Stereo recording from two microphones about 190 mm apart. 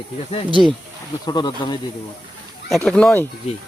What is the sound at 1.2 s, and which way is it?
Speech, 25° left (ahead or behind).